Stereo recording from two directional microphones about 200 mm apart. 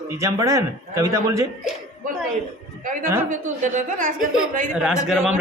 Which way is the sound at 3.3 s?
40° right (ahead or behind).